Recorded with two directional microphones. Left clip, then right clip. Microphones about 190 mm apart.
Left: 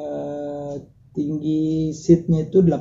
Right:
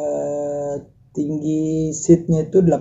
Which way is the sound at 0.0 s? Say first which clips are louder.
Right 6 dB; 10° right (ahead or behind).